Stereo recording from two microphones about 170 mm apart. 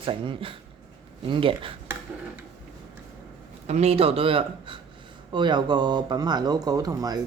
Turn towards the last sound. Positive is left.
turn(degrees=-20)  # may be behind; listen again after turning